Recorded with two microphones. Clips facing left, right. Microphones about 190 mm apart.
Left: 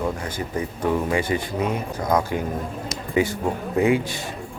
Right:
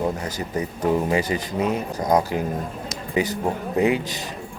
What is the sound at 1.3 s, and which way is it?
Speech, 25° right (ahead or behind).